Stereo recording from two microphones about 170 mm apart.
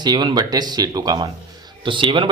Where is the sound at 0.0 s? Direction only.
25° right (ahead or behind).